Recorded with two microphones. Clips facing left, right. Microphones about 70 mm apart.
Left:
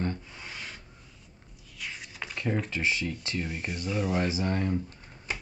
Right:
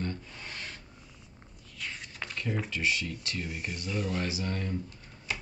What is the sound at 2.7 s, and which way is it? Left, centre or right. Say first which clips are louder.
Speech: left 2 dB; left.